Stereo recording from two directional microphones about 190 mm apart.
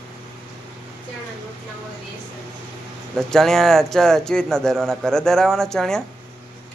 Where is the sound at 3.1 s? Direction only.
Centre (ahead or behind).